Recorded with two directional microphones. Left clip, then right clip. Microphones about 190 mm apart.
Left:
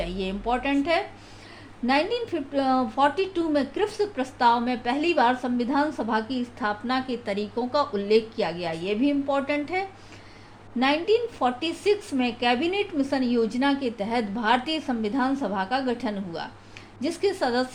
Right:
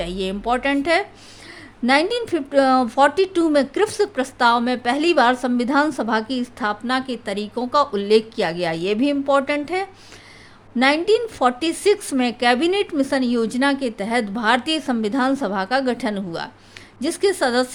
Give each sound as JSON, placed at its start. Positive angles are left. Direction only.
{"t": 0.0, "sound": "a woman's voice", "side_deg": -40}